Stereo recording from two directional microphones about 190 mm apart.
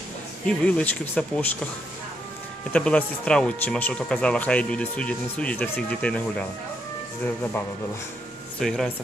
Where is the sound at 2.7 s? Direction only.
5° left (ahead or behind).